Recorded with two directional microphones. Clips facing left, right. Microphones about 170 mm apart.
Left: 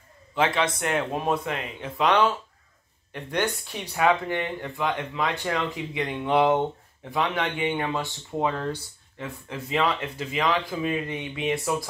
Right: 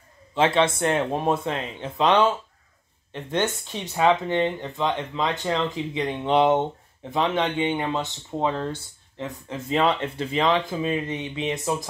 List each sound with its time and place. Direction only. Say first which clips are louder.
0.3 s speech: right 4 dB; 25° right (ahead or behind)